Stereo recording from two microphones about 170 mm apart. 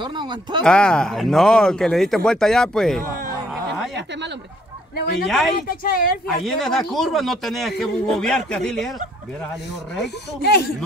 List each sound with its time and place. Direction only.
0.0 s speech: 25° right (ahead or behind)
0.7 s speech: 5° left (ahead or behind)
5.2 s speech: centre (ahead or behind)
5.6 s a woman's voice: 60° left (ahead or behind)
6.4 s speech: centre (ahead or behind)
10.4 s speech: 70° left (ahead or behind)